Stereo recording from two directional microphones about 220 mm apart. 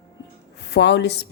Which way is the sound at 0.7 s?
50° left (ahead or behind).